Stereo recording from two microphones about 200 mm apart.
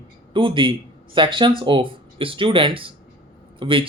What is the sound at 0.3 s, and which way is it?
Speech, 25° right (ahead or behind).